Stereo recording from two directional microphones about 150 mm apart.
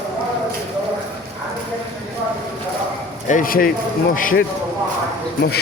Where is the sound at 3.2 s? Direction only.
65° left (ahead or behind).